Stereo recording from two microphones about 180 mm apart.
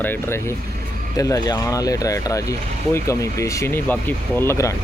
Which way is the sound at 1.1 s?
20° left (ahead or behind).